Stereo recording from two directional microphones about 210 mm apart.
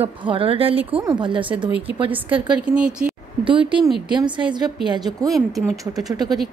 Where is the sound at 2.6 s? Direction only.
5° right (ahead or behind).